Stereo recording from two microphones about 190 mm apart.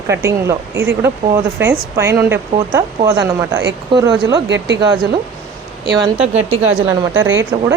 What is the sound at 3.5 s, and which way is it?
Speech, 65° right (ahead or behind).